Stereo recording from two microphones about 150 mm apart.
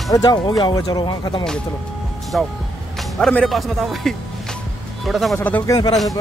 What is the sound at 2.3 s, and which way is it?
Speech, centre (ahead or behind).